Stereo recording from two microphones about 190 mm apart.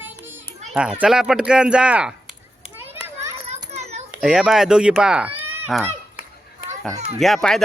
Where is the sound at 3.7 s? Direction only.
35° right (ahead or behind).